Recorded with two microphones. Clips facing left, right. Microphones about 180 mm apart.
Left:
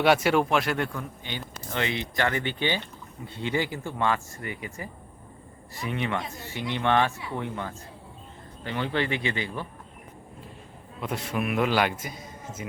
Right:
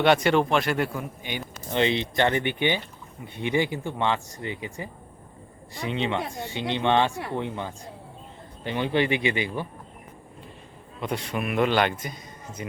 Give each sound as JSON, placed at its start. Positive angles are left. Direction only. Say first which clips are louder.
{"t": 0.0, "sound": "a man's voice", "louder": "right 1 dB", "side_deg": 5}
{"t": 0.9, "sound": "speech", "louder": "right 3 dB", "side_deg": -15}
{"t": 11.0, "sound": "a man's voice", "louder": "even", "side_deg": 0}